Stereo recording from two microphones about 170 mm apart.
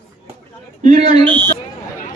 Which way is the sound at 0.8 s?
45° right (ahead or behind).